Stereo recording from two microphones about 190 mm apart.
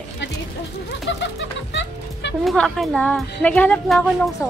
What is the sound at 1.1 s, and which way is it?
Music, 65° left (ahead or behind).